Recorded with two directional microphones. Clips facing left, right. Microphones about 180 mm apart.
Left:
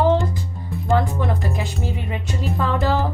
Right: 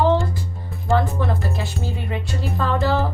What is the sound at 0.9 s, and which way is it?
Speech, 15° left (ahead or behind).